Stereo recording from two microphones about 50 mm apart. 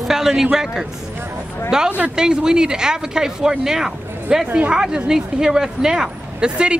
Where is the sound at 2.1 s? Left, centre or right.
Centre.